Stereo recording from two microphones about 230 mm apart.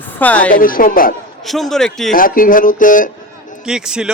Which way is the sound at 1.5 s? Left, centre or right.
Centre.